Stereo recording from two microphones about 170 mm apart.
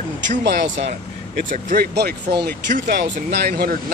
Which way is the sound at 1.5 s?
50° right (ahead or behind).